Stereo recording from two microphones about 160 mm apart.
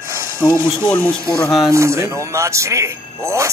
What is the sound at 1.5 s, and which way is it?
Speech, centre (ahead or behind).